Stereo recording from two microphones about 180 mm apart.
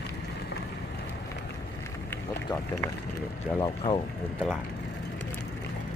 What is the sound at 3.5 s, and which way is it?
Speech, 25° left (ahead or behind).